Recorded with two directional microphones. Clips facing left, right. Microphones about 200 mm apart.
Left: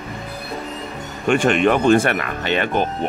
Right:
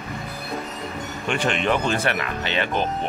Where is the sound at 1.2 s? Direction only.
50° left (ahead or behind).